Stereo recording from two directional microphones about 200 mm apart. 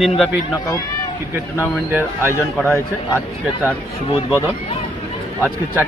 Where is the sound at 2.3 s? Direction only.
15° left (ahead or behind).